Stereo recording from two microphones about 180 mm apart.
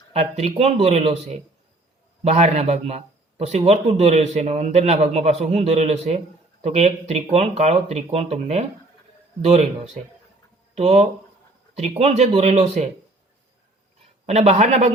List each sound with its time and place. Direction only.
0.1 s speech: 35° right (ahead or behind)
14.3 s speech: 35° right (ahead or behind)